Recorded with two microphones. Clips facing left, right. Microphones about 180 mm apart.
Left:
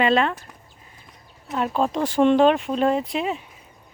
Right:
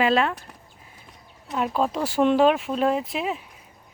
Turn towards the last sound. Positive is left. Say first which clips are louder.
# left 2 dB
turn(degrees=0)  # may be behind; listen again after turning